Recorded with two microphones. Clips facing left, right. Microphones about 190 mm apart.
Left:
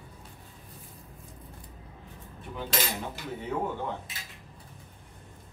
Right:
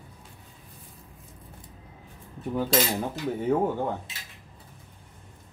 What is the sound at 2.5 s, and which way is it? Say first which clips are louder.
Cutlery: right 9 dB; 45° right (ahead or behind).